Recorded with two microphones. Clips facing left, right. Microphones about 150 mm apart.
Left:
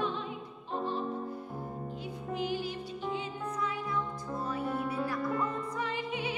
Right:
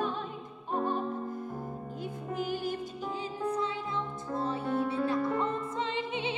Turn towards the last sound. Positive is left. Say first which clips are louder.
# right 2 dB
turn(degrees=-25)  # may be behind; listen again after turning